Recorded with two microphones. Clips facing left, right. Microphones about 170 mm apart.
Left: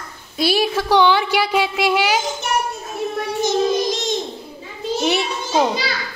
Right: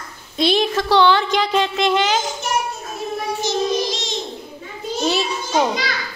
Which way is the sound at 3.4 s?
50° left (ahead or behind).